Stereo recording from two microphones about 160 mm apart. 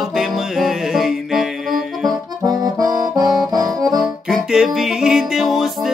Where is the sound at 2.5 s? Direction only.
25° right (ahead or behind).